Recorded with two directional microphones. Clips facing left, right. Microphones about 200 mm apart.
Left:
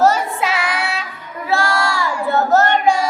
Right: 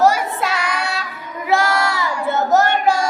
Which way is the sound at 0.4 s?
5° left (ahead or behind).